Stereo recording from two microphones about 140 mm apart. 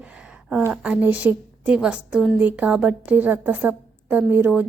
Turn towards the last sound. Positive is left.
turn(degrees=-10)  # may be behind; listen again after turning